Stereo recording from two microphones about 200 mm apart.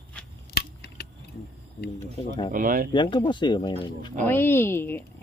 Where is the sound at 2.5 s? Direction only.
45° right (ahead or behind).